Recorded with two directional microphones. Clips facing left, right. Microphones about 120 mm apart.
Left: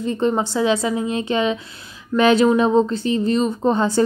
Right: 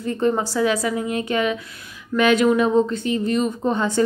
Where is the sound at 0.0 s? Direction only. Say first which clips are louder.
Left 1 dB; 20° left (ahead or behind).